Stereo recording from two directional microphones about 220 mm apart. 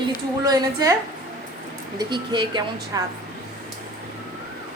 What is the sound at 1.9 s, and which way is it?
Speech, 20° right (ahead or behind).